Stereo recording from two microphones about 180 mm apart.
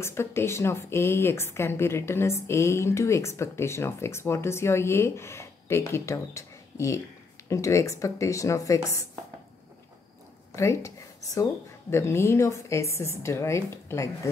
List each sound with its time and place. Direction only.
0.0 s a woman's voice: 15° left (ahead or behind)
10.5 s a woman's voice: 15° left (ahead or behind)